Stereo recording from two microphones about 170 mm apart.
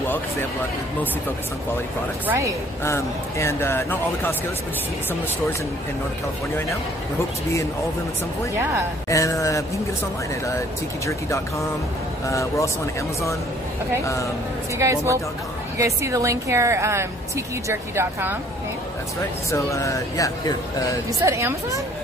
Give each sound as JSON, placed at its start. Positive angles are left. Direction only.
{"t": 2.2, "sound": "a woman's voice", "side_deg": -15}
{"t": 2.8, "sound": "speech", "side_deg": 15}
{"t": 9.1, "sound": "speech", "side_deg": 20}
{"t": 11.1, "sound": "speech", "side_deg": 15}
{"t": 14.8, "sound": "a woman's voice", "side_deg": -20}
{"t": 19.5, "sound": "speech", "side_deg": 20}
{"t": 21.2, "sound": "a woman's voice", "side_deg": -15}